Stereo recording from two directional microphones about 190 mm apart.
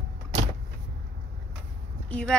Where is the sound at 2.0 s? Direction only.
5° left (ahead or behind).